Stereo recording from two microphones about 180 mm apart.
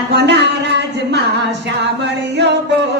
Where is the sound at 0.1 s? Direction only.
70° right (ahead or behind).